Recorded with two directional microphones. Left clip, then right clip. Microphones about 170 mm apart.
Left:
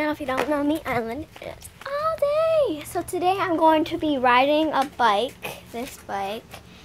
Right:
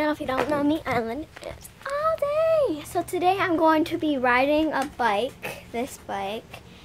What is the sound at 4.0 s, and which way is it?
A woman's voice, centre (ahead or behind).